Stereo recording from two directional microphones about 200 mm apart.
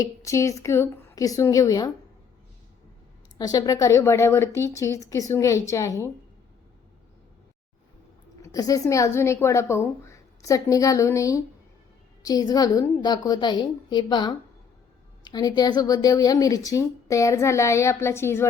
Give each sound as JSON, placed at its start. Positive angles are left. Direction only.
{"t": 0.0, "sound": "a woman's voice", "side_deg": 15}
{"t": 3.3, "sound": "a woman's voice", "side_deg": 20}
{"t": 8.4, "sound": "a woman's voice", "side_deg": 15}